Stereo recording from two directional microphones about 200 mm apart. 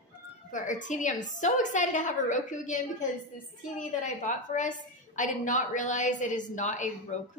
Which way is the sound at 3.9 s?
40° left (ahead or behind).